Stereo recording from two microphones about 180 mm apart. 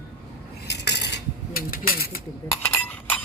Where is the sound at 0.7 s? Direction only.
70° left (ahead or behind); by 2.2 s 55° left (ahead or behind).